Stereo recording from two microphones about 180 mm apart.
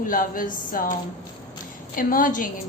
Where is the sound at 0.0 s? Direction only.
50° left (ahead or behind).